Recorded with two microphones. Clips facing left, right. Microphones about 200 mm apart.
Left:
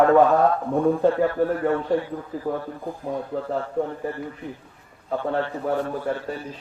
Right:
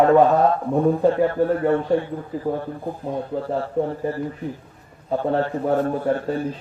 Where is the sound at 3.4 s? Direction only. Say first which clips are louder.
Right 4 dB; 35° right (ahead or behind).